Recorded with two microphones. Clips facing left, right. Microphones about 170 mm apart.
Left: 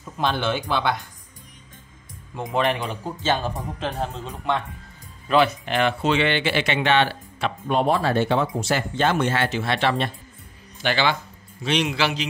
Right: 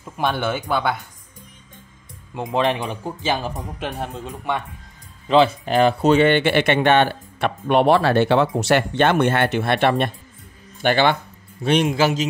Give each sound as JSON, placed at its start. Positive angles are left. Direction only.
{"t": 0.0, "sound": "speech", "side_deg": -5}
{"t": 2.3, "sound": "speech", "side_deg": -20}
{"t": 5.3, "sound": "speech", "side_deg": -25}
{"t": 5.7, "sound": "a man's voice", "side_deg": -40}